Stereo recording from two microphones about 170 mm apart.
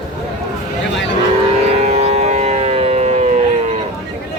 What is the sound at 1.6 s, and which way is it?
Civil defense siren, 40° right (ahead or behind).